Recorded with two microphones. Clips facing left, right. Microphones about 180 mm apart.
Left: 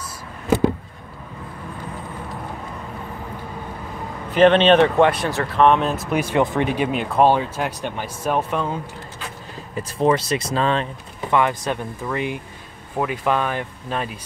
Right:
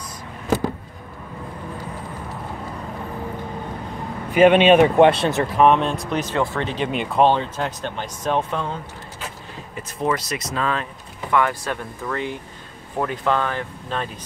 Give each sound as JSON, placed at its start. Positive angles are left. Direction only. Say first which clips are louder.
{"t": 4.3, "sound": "speech", "louder": "right 1 dB", "side_deg": -10}
{"t": 5.0, "sound": "speech", "louder": "right 3 dB", "side_deg": -25}
{"t": 5.6, "sound": "speech", "louder": "left 1 dB", "side_deg": 0}
{"t": 6.9, "sound": "speech", "louder": "right 1 dB", "side_deg": 0}
{"t": 10.0, "sound": "speech", "louder": "left 5 dB", "side_deg": 30}